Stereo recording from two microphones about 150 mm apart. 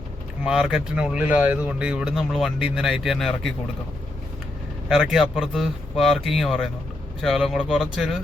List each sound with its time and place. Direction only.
0.4 s speech: 5° right (ahead or behind)
4.9 s speech: centre (ahead or behind)